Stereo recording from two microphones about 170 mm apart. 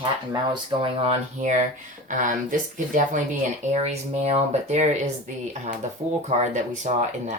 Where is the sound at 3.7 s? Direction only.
40° right (ahead or behind).